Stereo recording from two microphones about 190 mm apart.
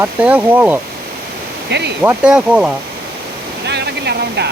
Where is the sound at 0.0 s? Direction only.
10° right (ahead or behind).